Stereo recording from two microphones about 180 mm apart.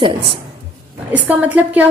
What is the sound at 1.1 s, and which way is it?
Speech, 10° right (ahead or behind).